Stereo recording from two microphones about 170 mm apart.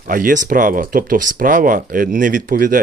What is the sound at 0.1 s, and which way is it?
Speech, 55° right (ahead or behind).